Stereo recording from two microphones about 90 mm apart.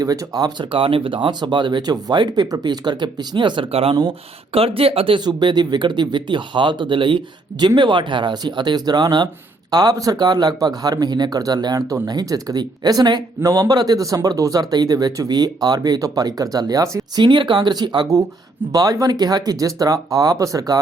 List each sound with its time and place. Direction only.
0.0 s speech: 45° right (ahead or behind)
0.7 s speech: 80° right
5.2 s speech: 55° right (ahead or behind); by 17.0 s 40° right (ahead or behind)
17.2 s speech: 60° right (ahead or behind)
18.7 s speech: 45° right (ahead or behind)